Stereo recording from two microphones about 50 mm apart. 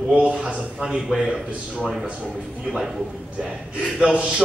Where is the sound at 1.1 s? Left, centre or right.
Centre.